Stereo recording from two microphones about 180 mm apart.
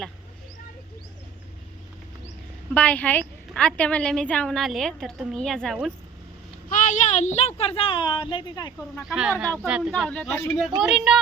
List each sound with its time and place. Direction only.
2.7 s a woman's voice: 10° left (ahead or behind)
6.7 s a woman's voice: 45° left (ahead or behind); by 8.7 s 25° left (ahead or behind)
9.0 s a woman's voice: 5° right (ahead or behind)
10.1 s a man's voice: 5° left (ahead or behind)
10.8 s a woman's voice: 5° right (ahead or behind)